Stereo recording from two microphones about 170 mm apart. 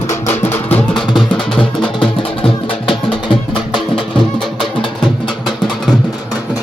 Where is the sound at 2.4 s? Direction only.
30° left (ahead or behind).